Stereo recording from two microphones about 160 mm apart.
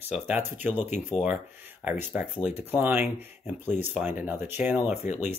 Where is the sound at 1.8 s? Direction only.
10° right (ahead or behind).